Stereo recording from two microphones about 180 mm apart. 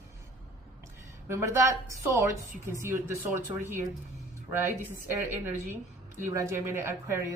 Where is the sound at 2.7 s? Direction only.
15° right (ahead or behind).